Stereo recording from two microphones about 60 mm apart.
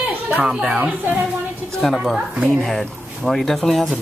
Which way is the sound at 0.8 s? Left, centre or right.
Right.